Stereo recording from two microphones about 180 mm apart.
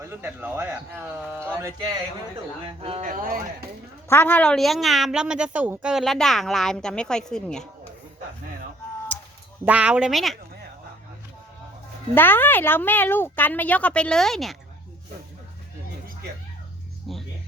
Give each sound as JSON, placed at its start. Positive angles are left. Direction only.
{"t": 0.0, "sound": "speech", "side_deg": -15}
{"t": 2.6, "sound": "speech", "side_deg": -35}
{"t": 3.1, "sound": "speech", "side_deg": -50}
{"t": 4.1, "sound": "a woman's voice", "side_deg": 10}
{"t": 9.6, "sound": "a woman's voice", "side_deg": -5}
{"t": 12.1, "sound": "a woman's voice", "side_deg": 10}
{"t": 17.1, "sound": "music", "side_deg": 0}